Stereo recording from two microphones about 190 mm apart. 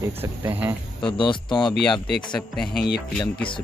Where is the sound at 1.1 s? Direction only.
25° left (ahead or behind).